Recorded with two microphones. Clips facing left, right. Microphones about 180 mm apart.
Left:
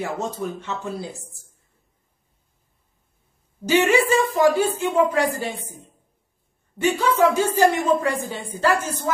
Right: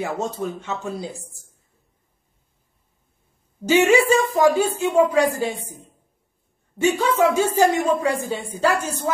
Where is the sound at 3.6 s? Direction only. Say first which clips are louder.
Right 2 dB; 15° right (ahead or behind).